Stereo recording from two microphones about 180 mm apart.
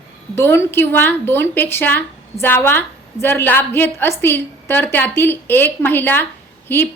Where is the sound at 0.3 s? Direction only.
15° left (ahead or behind).